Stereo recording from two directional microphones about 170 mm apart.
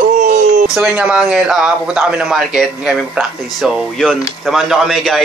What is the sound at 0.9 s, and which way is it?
Speech, 5° right (ahead or behind).